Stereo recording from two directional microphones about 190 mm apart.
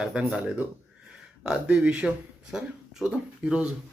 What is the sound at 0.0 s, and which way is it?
Speech, 5° right (ahead or behind).